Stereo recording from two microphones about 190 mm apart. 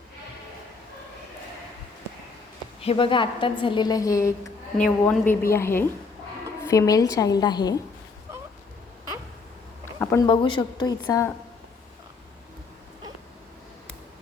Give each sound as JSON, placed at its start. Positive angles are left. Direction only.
{"t": 2.8, "sound": "a woman's voice", "side_deg": 30}
{"t": 4.8, "sound": "a woman's voice", "side_deg": 5}
{"t": 9.8, "sound": "a sound", "side_deg": 15}
{"t": 10.2, "sound": "a woman's voice", "side_deg": 25}